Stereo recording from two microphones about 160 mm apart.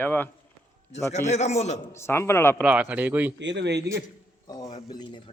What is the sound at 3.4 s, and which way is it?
Speech, 90° right.